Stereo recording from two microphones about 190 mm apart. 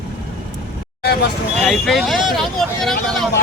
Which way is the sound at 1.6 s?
Centre (ahead or behind).